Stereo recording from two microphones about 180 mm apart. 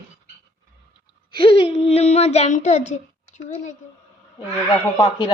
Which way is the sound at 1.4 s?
30° left (ahead or behind).